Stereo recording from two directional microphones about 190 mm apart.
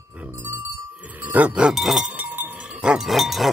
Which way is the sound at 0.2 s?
15° right (ahead or behind).